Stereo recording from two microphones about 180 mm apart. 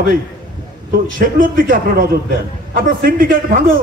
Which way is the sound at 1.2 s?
50° right (ahead or behind).